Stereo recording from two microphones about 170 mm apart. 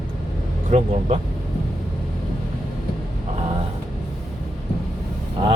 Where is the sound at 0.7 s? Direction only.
40° right (ahead or behind).